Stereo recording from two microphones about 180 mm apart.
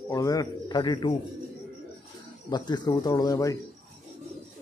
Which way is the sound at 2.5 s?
25° left (ahead or behind).